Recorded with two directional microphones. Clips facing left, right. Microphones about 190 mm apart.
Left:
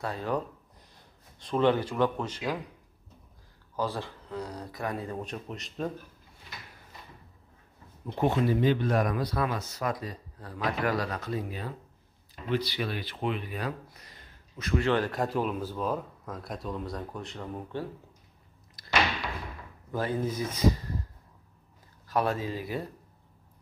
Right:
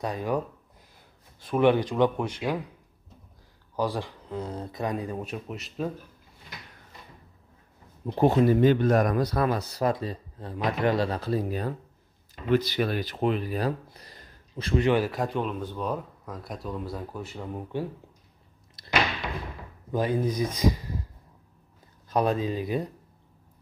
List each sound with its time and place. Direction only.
0.0 s speech: 15° right (ahead or behind)
1.4 s speech: 10° right (ahead or behind)
3.7 s speech: 15° right (ahead or behind)
8.2 s speech: 40° right (ahead or behind)
14.8 s speech: 15° right (ahead or behind)
15.0 s speech: centre (ahead or behind)
18.8 s door: 20° right (ahead or behind)
19.9 s speech: 15° right (ahead or behind)
22.1 s speech: 20° right (ahead or behind)